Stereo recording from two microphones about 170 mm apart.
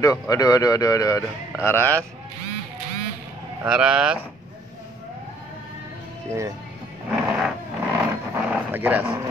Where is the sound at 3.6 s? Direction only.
5° right (ahead or behind).